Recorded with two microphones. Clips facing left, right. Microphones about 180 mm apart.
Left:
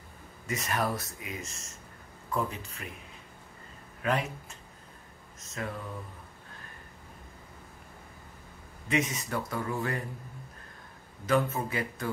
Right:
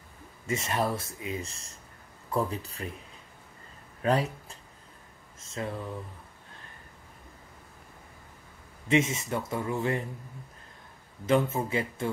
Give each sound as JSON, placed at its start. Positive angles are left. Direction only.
{"t": 0.5, "sound": "speech", "side_deg": -25}
{"t": 4.0, "sound": "speech", "side_deg": -35}
{"t": 5.6, "sound": "speech", "side_deg": -25}
{"t": 8.8, "sound": "speech", "side_deg": -25}
{"t": 11.2, "sound": "speech", "side_deg": -25}